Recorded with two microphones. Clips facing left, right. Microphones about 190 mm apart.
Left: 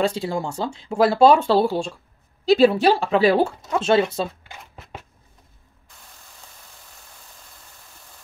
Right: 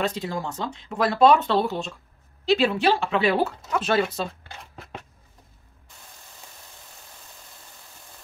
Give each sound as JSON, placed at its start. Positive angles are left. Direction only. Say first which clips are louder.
{"t": 0.0, "sound": "speech", "louder": "left 4 dB", "side_deg": 30}